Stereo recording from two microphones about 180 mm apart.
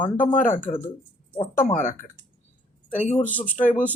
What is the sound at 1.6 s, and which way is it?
Speech, 45° left (ahead or behind).